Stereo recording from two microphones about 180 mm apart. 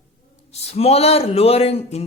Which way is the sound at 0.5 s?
35° left (ahead or behind).